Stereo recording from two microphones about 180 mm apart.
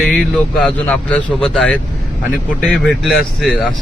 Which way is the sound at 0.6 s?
5° left (ahead or behind).